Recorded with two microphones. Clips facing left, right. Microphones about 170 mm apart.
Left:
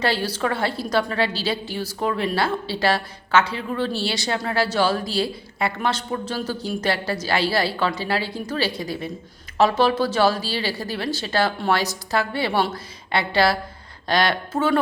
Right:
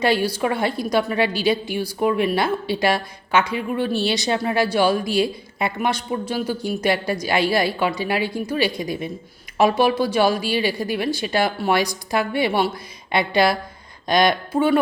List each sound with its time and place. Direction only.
0.0 s a woman's voice: 15° right (ahead or behind)